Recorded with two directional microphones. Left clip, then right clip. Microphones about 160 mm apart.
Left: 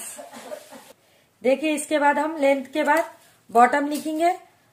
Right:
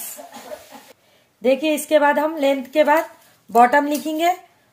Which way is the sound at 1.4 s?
30° right (ahead or behind).